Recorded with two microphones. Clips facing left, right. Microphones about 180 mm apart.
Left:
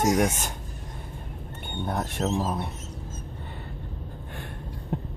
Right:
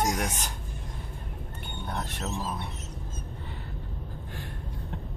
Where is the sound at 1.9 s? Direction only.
45° left (ahead or behind).